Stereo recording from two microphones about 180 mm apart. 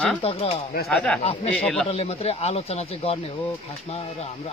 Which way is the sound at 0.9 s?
5° left (ahead or behind).